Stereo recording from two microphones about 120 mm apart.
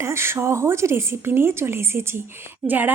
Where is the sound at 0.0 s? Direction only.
20° right (ahead or behind).